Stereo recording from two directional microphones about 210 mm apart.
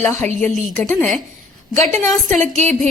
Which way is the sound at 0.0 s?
5° left (ahead or behind).